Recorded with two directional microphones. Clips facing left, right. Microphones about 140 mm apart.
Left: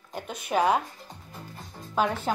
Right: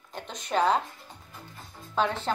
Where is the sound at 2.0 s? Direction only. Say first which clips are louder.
Left 1 dB; 10° left (ahead or behind).